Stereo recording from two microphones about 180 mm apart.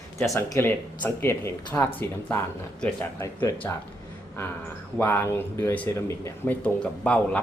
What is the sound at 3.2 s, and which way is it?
Speech, 15° left (ahead or behind).